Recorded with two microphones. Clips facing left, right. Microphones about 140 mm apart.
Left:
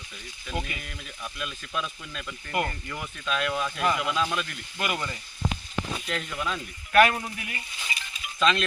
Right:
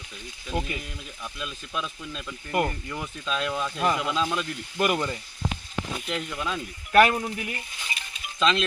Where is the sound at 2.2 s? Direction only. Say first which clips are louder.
Right 3 dB; centre (ahead or behind).